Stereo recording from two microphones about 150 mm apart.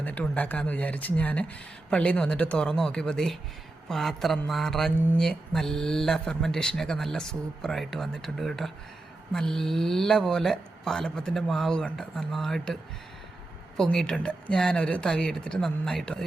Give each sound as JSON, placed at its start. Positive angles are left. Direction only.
{"t": 0.0, "sound": "speech", "side_deg": 10}
{"t": 13.7, "sound": "speech", "side_deg": 5}